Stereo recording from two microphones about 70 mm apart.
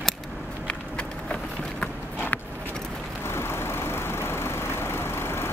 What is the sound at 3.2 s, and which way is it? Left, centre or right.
Vehicle, left.